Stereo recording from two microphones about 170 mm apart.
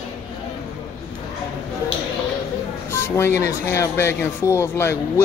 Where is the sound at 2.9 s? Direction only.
15° left (ahead or behind).